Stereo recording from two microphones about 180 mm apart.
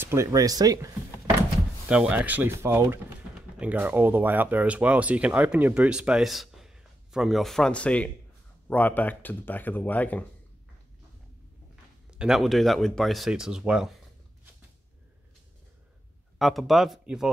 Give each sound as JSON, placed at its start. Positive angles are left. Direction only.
{"t": 0.0, "sound": "speech", "side_deg": -15}
{"t": 1.9, "sound": "speech", "side_deg": -5}
{"t": 12.1, "sound": "speech", "side_deg": -5}
{"t": 16.3, "sound": "speech", "side_deg": 0}